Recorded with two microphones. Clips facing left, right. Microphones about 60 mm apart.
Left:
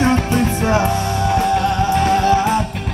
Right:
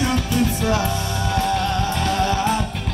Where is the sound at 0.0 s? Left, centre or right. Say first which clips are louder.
Left 4 dB; left.